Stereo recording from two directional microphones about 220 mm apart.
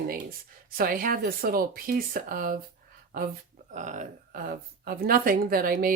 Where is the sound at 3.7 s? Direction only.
35° right (ahead or behind).